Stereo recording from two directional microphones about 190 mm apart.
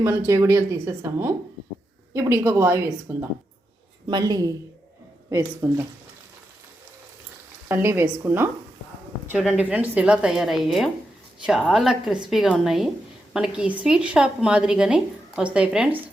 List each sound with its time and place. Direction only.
0.0 s a woman's voice: 15° right (ahead or behind)
5.6 s speech: 15° right (ahead or behind)
7.7 s a woman's voice: 15° right (ahead or behind)